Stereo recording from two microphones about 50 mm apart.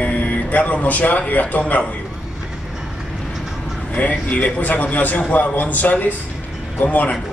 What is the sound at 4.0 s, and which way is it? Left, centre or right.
A man's voice, left.